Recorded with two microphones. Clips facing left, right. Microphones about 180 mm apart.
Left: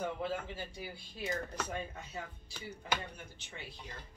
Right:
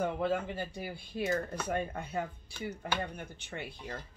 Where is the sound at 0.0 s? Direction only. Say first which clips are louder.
Right 6 dB; 55° right (ahead or behind).